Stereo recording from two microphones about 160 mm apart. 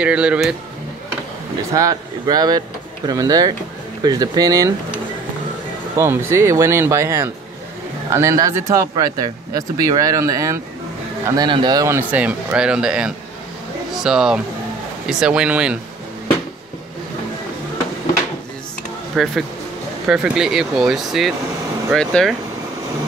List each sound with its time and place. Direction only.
0.0 s speech: 5° right (ahead or behind)
1.7 s speech: 20° right (ahead or behind)
5.9 s speech: 15° right (ahead or behind)
12.1 s speech: 10° right (ahead or behind)
19.2 s speech: centre (ahead or behind)